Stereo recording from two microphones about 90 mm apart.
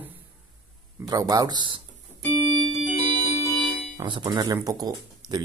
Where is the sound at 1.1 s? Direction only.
45° right (ahead or behind); by 1.8 s 60° right (ahead or behind).